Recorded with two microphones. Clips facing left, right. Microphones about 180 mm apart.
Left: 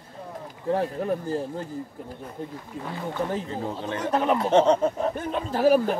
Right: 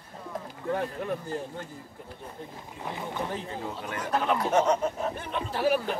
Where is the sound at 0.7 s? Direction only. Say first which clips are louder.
Left 5 dB; 35° left (ahead or behind).